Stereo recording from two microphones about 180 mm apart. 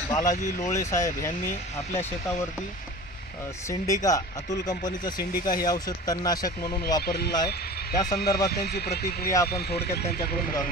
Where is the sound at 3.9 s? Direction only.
20° left (ahead or behind).